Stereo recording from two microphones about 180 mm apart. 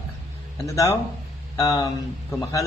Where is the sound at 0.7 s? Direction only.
15° left (ahead or behind).